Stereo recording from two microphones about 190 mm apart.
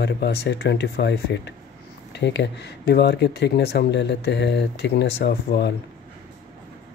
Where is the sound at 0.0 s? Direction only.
60° left (ahead or behind).